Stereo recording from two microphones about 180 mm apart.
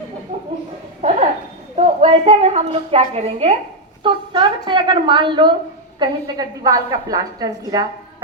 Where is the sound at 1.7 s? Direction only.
35° right (ahead or behind).